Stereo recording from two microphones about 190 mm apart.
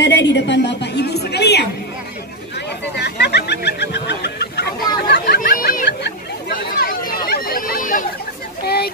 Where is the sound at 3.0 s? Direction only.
60° left (ahead or behind).